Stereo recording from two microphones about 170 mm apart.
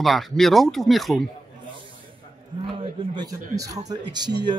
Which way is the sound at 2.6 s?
25° right (ahead or behind).